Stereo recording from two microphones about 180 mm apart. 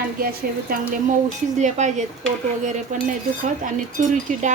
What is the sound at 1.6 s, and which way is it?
Speech, 40° right (ahead or behind).